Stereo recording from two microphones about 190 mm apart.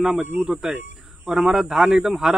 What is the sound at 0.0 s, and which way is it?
Speech, centre (ahead or behind).